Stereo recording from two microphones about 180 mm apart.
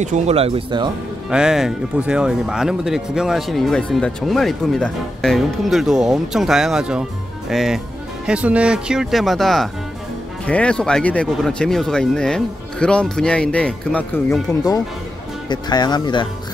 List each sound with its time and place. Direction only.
0.0 s speech: 40° right (ahead or behind)
1.3 s speech: 5° right (ahead or behind)
14.5 s speech: 20° left (ahead or behind)